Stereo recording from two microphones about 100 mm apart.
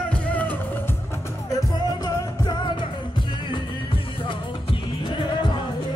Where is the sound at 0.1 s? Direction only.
15° left (ahead or behind).